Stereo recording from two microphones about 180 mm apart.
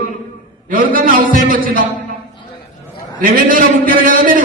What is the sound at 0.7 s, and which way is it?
Speech, 50° right (ahead or behind).